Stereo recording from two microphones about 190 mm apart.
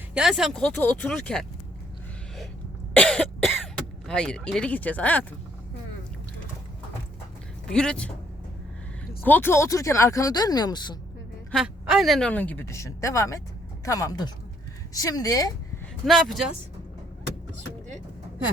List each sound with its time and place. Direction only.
0.1 s speech: 5° right (ahead or behind)
2.9 s cough: 5° left (ahead or behind)
4.0 s speech: 5° left (ahead or behind)
7.7 s speech: 5° left (ahead or behind)
9.2 s a woman's voice: 10° left (ahead or behind)
11.5 s a woman's voice: 5° right (ahead or behind); by 15.5 s 20° left (ahead or behind)
16.0 s speech: centre (ahead or behind)